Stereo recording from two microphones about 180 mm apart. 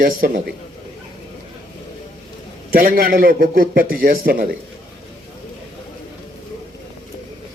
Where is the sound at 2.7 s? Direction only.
55° right (ahead or behind).